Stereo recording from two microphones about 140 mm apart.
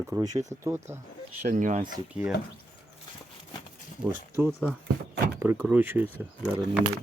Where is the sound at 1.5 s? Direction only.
60° right (ahead or behind).